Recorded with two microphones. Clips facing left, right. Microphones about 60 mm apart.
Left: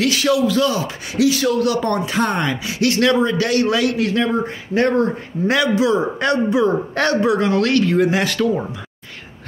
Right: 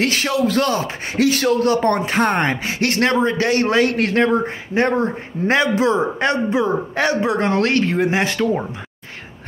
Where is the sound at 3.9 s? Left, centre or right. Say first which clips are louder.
Right 2 dB; right.